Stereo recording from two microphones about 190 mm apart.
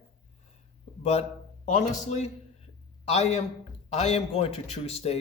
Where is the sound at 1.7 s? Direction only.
35° left (ahead or behind).